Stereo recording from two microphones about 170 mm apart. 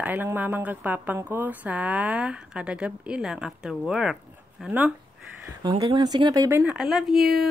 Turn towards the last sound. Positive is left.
turn(degrees=0)  # may be behind; listen again after turning